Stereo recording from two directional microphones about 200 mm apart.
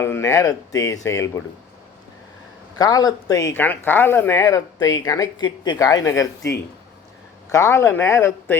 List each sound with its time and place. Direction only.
0.0 s speech: 15° left (ahead or behind)
2.7 s speech: 20° left (ahead or behind)